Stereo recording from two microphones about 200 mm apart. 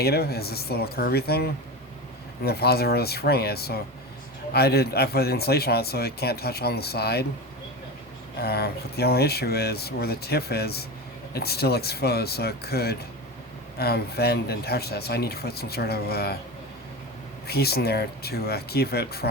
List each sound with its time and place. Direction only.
0.0 s speech: 50° left (ahead or behind)
8.4 s speech: 50° left (ahead or behind)
17.4 s speech: 50° left (ahead or behind)